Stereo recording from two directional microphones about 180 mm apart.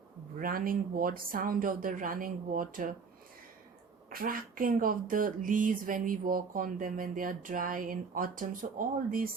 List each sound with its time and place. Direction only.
0.3 s speech: 50° right (ahead or behind)
4.1 s speech: 50° right (ahead or behind)